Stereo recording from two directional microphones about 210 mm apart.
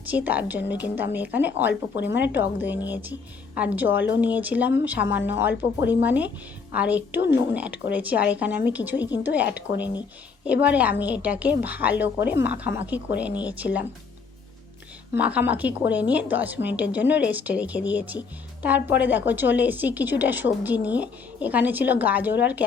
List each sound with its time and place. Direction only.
0.1 s speech: 10° right (ahead or behind)
3.8 s speech: 60° left (ahead or behind)
4.2 s speech: 10° right (ahead or behind)
15.1 s speech: 5° right (ahead or behind)